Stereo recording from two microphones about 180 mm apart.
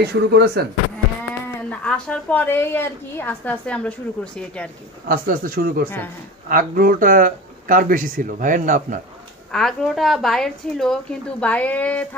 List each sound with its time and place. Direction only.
0.0 s speech: 65° right (ahead or behind)
1.7 s a woman's voice: 5° left (ahead or behind)
5.0 s speech: 55° right (ahead or behind)
9.5 s a woman's voice: 5° left (ahead or behind)